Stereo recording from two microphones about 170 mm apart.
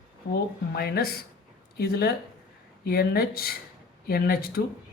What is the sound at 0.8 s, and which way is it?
Speech, 65° left (ahead or behind).